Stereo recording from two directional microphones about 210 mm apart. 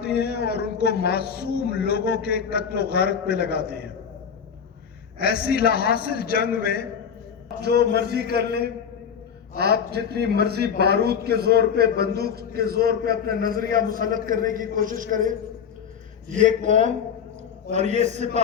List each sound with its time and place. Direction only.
0.0 s a man's voice: 50° left (ahead or behind)
5.2 s a man's voice: 45° left (ahead or behind)
7.6 s a man's voice: 50° right (ahead or behind); by 18.3 s 35° right (ahead or behind)